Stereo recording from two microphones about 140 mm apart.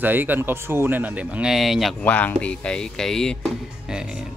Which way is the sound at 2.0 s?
10° left (ahead or behind).